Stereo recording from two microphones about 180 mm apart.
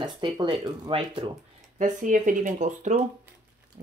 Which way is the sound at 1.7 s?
45° right (ahead or behind).